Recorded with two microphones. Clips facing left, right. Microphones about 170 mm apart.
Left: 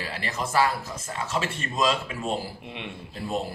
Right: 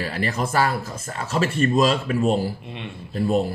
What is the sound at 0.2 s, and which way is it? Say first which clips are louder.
Speech: right 2 dB; 60° right (ahead or behind).